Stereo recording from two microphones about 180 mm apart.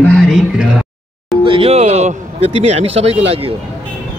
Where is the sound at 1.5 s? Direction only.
30° right (ahead or behind).